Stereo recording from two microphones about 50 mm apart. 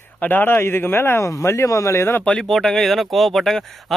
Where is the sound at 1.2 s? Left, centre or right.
Left.